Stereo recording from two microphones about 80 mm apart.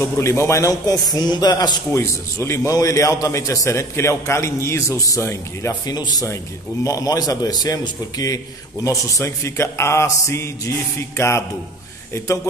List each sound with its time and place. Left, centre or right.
0.0 s a man's voice: left
1.1 s speech: left
2.0 s a man's voice: left
5.7 s speech: left
6.2 s a man's voice: left